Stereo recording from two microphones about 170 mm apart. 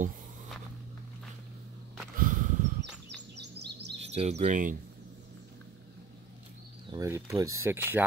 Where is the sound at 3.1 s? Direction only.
80° right.